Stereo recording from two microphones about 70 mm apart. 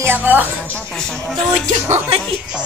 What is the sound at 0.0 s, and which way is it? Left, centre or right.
Speech, right.